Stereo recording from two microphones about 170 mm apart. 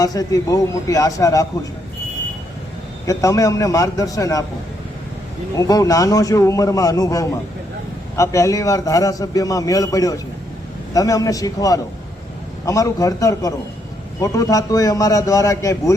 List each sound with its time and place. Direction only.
0.0 s a man's voice: 20° left (ahead or behind)
3.1 s a man's voice: 20° left (ahead or behind)
5.5 s a man's voice: 20° left (ahead or behind)